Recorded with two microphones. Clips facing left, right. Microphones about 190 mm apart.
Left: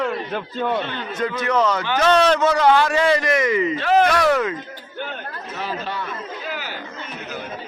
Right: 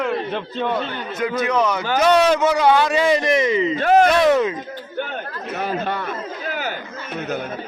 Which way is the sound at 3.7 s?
45° right (ahead or behind).